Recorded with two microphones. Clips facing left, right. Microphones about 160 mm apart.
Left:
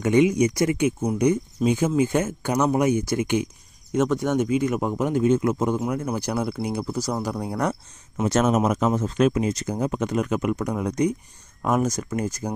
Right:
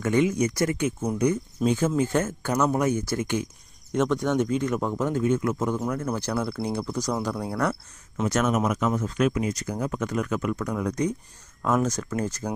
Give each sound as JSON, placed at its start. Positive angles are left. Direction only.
{"t": 0.0, "sound": "speech", "side_deg": 15}
{"t": 3.9, "sound": "speech", "side_deg": 5}
{"t": 8.2, "sound": "speech", "side_deg": 25}